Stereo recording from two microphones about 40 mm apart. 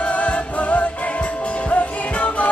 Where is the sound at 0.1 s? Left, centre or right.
Left.